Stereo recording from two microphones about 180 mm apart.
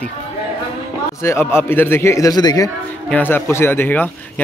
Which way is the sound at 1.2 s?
15° left (ahead or behind).